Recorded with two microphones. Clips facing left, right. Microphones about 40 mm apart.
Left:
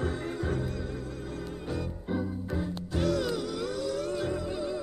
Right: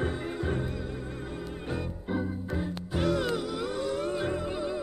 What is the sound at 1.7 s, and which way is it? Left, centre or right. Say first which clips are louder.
Music: right 1 dB; centre.